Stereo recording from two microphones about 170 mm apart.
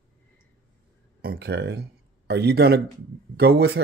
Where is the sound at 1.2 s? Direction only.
70° right (ahead or behind).